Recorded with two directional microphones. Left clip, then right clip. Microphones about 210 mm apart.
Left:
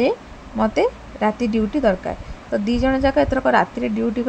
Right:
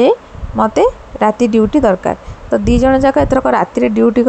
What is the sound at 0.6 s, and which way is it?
A woman's voice, 20° right (ahead or behind).